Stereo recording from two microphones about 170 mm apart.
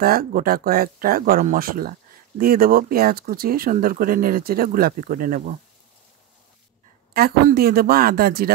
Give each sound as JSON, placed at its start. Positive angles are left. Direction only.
{"t": 0.0, "sound": "speech", "side_deg": -60}
{"t": 7.2, "sound": "speech", "side_deg": -65}